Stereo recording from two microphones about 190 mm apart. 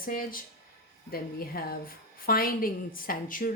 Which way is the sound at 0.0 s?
50° left (ahead or behind).